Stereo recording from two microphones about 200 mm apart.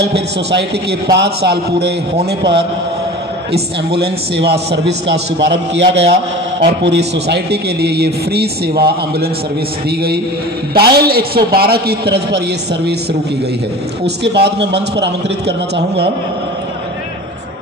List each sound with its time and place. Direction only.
0.0 s a man's voice: 55° right (ahead or behind)
3.5 s a man's voice: 55° right (ahead or behind)
14.0 s a man's voice: 55° right (ahead or behind)